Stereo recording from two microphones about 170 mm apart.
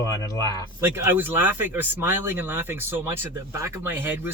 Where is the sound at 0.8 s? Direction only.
15° right (ahead or behind).